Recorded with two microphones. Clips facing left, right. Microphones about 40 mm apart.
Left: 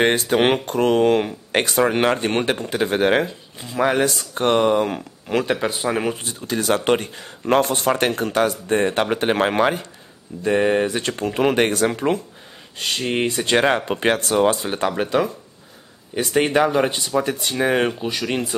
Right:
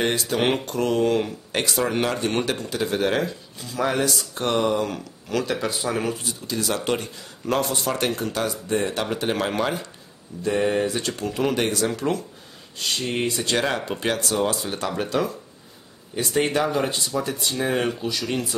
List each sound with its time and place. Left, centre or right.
0.0 s speech: left
6.2 s speech: left